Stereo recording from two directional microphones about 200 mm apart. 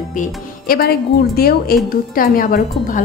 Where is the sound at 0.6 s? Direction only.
50° left (ahead or behind).